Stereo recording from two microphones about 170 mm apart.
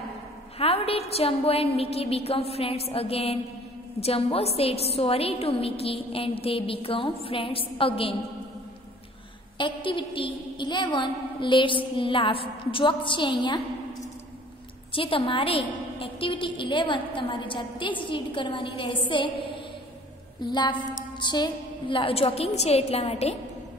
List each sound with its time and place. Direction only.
0.6 s a woman's voice: 35° left (ahead or behind)
9.6 s a woman's voice: 30° left (ahead or behind)
14.9 s a woman's voice: 30° left (ahead or behind)
20.4 s a woman's voice: 25° left (ahead or behind)